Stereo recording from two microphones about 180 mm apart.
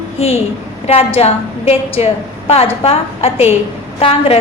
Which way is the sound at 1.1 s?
35° left (ahead or behind).